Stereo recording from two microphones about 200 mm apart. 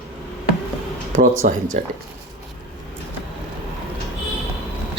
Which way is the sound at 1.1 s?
40° right (ahead or behind).